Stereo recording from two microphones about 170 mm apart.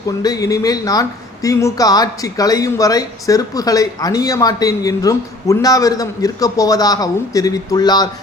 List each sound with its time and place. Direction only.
0.2 s a woman's voice: 20° left (ahead or behind)